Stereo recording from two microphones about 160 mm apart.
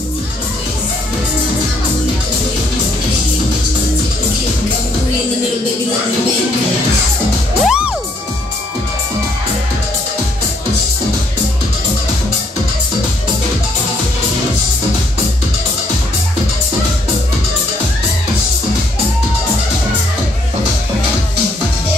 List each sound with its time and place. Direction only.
7.6 s music: 5° right (ahead or behind)